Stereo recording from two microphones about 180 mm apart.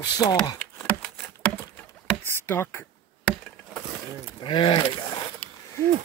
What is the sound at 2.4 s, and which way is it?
Speech, 15° left (ahead or behind).